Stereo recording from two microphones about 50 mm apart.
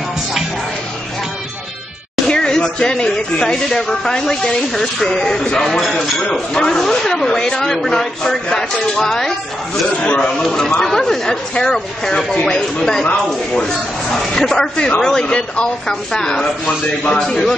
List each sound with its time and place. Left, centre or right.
2.2 s speech: centre
9.8 s a man's voice: centre
10.3 s a man's voice: centre
17.2 s speech: centre